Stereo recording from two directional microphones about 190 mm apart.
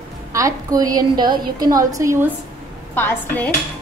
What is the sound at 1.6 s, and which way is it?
Speech, 20° right (ahead or behind).